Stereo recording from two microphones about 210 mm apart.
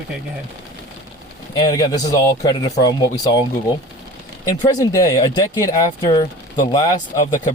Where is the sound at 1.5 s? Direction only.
20° left (ahead or behind).